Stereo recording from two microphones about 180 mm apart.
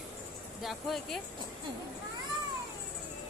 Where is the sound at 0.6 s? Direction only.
Centre (ahead or behind).